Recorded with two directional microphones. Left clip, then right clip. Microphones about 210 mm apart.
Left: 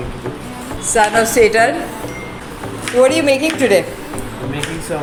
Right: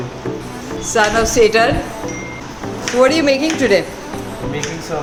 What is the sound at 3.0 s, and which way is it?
Speech, 10° right (ahead or behind).